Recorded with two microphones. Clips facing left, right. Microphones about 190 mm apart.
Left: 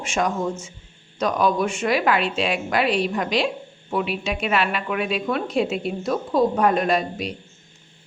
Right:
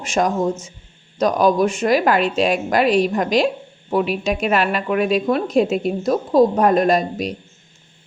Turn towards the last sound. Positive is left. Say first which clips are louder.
# right 5 dB
turn(degrees=-40)  # may be behind; listen again after turning